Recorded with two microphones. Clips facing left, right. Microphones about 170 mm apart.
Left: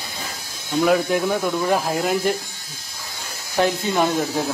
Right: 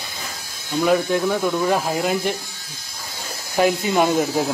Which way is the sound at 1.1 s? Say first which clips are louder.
Right 1 dB; 10° left (ahead or behind).